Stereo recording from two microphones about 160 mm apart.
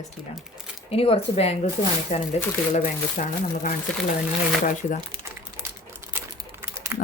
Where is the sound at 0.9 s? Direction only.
35° left (ahead or behind); by 4.9 s 55° left (ahead or behind).